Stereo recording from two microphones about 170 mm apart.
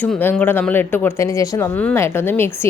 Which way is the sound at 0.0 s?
10° left (ahead or behind).